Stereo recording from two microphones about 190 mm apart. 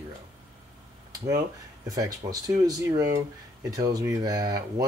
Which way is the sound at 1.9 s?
20° right (ahead or behind).